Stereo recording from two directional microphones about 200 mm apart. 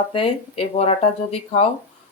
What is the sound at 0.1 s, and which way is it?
Speech, 30° left (ahead or behind).